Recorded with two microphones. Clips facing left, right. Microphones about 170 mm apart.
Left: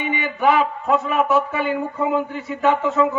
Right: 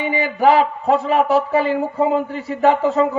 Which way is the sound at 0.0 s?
35° right (ahead or behind).